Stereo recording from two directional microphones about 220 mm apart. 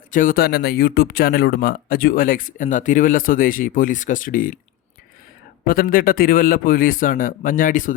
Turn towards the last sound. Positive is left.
turn(degrees=35)  # may be behind; listen again after turning